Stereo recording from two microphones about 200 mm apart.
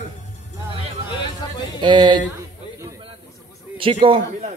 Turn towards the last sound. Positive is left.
turn(degrees=-30)  # may be behind; listen again after turning